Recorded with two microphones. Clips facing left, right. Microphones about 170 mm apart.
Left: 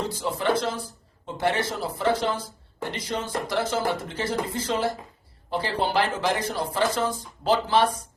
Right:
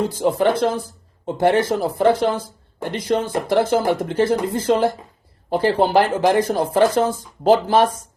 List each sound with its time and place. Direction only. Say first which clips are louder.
0.3 s speech: right 4 dB; 50° right (ahead or behind)